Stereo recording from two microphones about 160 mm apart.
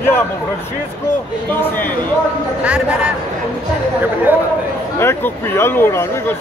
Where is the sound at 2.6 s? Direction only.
5° right (ahead or behind).